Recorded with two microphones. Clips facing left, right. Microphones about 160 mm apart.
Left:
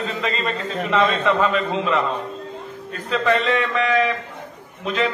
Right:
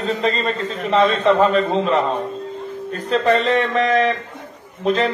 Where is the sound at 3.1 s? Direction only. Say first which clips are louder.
Right 3 dB; 35° right (ahead or behind).